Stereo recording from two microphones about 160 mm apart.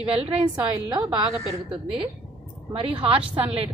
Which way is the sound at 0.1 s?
35° right (ahead or behind).